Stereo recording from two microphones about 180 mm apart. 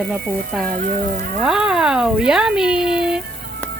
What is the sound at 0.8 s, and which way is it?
Speech, 50° right (ahead or behind).